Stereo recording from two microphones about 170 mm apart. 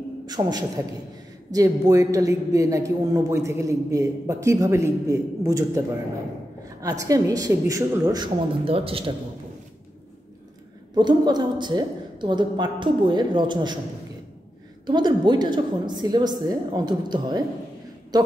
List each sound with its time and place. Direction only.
0.3 s a man's voice: 25° right (ahead or behind)
11.0 s a man's voice: 25° right (ahead or behind)
14.9 s a man's voice: 25° right (ahead or behind)